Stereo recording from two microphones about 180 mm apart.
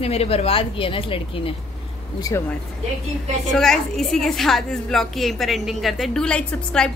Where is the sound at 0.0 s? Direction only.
35° left (ahead or behind).